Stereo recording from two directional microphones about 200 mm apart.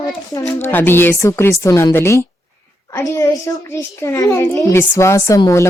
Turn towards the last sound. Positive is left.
turn(degrees=15)  # may be behind; listen again after turning